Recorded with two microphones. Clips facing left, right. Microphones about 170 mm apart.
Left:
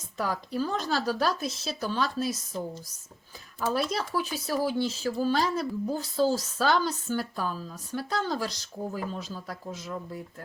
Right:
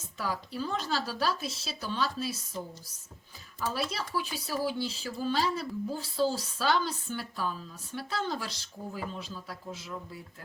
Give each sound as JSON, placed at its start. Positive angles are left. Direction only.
{"t": 0.2, "sound": "speech", "side_deg": 45}
{"t": 3.6, "sound": "speech", "side_deg": 50}